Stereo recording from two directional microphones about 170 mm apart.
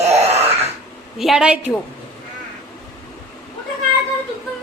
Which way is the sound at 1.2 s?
5° right (ahead or behind).